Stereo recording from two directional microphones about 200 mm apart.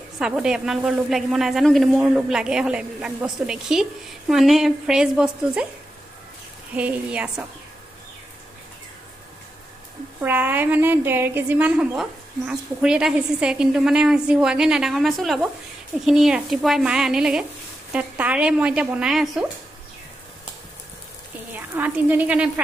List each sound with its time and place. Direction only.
0.2 s a woman's voice: 5° right (ahead or behind)
6.7 s speech: 5° right (ahead or behind)
10.2 s a woman's voice: 10° right (ahead or behind)
21.5 s a woman's voice: 10° right (ahead or behind)